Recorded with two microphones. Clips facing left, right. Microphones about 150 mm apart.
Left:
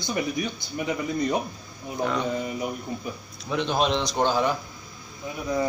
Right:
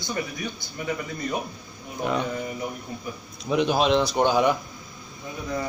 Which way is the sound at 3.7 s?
Centre (ahead or behind).